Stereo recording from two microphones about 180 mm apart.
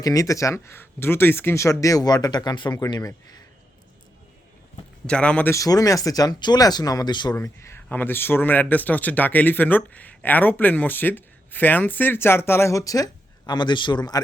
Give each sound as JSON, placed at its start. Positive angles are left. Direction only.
{"t": 0.0, "sound": "speech", "side_deg": 20}
{"t": 5.0, "sound": "speech", "side_deg": 5}